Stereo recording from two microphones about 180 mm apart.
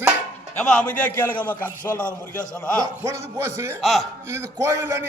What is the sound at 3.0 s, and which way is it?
Speech, 15° right (ahead or behind).